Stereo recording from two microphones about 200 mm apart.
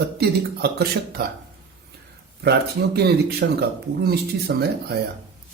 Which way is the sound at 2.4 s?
55° right (ahead or behind).